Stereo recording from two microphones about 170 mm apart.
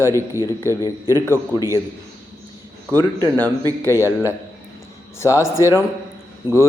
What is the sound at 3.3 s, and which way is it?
Speech, 10° left (ahead or behind).